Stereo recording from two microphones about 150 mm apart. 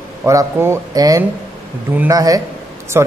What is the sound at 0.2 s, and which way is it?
A man's voice, 20° right (ahead or behind).